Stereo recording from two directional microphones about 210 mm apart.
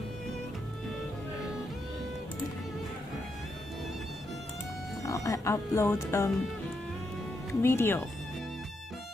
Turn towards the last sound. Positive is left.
turn(degrees=10)  # may be behind; listen again after turning